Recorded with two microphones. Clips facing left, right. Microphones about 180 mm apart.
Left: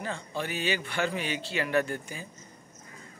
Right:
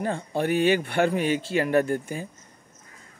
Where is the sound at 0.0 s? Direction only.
55° right (ahead or behind).